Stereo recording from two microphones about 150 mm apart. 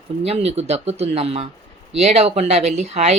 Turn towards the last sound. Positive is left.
turn(degrees=-50)  # may be behind; listen again after turning